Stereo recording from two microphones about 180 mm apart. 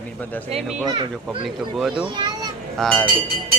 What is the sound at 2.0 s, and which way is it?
Speech, 25° right (ahead or behind).